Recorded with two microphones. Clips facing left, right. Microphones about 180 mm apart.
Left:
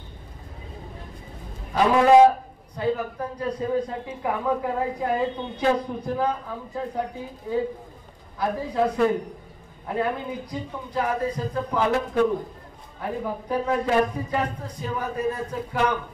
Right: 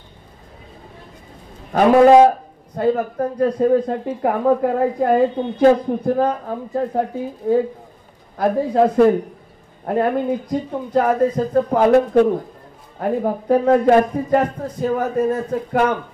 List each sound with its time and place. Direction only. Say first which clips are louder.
1.7 s speech: right 6 dB; 50° right (ahead or behind)